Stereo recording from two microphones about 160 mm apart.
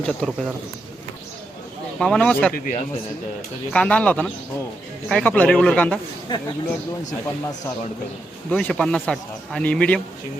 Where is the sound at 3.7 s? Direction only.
5° left (ahead or behind).